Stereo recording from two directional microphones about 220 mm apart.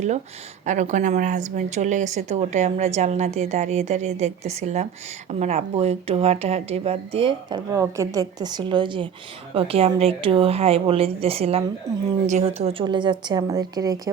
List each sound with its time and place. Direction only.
0.6 s a woman's voice: 35° right (ahead or behind); by 14.1 s 15° right (ahead or behind)